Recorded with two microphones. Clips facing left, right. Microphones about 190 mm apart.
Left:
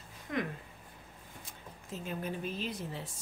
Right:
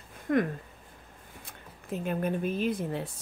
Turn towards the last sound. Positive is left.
turn(degrees=-60)  # may be behind; listen again after turning